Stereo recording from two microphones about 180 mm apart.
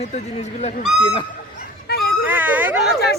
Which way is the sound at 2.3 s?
10° right (ahead or behind).